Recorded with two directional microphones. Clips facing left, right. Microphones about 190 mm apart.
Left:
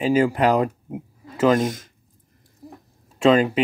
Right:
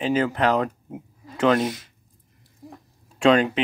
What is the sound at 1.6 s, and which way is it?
Speech, 45° left (ahead or behind).